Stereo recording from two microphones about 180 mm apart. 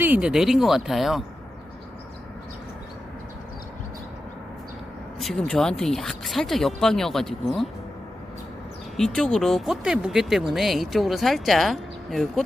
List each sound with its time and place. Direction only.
0.0 s speech: 5° right (ahead or behind)
5.2 s speech: 5° left (ahead or behind)
9.0 s speech: 5° left (ahead or behind)